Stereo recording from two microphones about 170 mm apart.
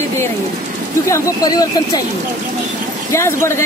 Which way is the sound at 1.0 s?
20° left (ahead or behind).